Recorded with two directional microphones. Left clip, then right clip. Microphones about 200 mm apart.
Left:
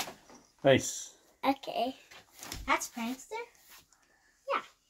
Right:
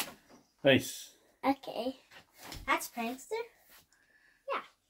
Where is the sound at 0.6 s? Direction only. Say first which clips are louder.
Left 1 dB; centre (ahead or behind).